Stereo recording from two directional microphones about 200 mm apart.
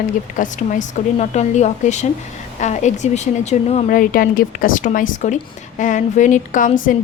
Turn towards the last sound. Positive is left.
turn(degrees=40)  # may be behind; listen again after turning